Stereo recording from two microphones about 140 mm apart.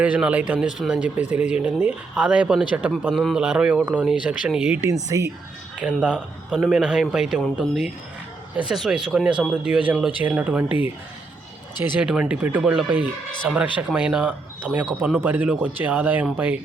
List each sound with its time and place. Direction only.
0.0 s a man's voice: 10° right (ahead or behind)
4.8 s speech: 25° right (ahead or behind)
5.8 s a man's voice: 5° right (ahead or behind)
11.9 s a man's voice: 5° right (ahead or behind)